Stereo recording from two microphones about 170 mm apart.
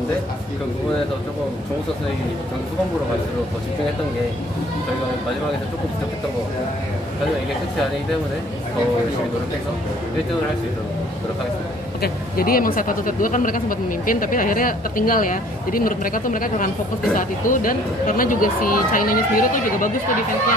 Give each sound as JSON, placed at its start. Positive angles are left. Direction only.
{"t": 12.0, "sound": "speech", "side_deg": 60}